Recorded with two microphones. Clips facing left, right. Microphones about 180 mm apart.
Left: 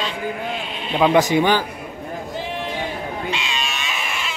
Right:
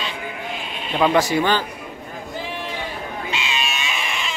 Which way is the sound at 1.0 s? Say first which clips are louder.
Left 2 dB; 15° left (ahead or behind).